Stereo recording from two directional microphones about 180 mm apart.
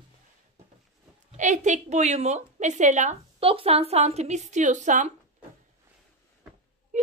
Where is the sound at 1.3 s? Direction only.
40° right (ahead or behind).